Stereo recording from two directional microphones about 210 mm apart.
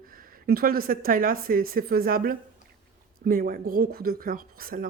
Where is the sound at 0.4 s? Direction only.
45° right (ahead or behind).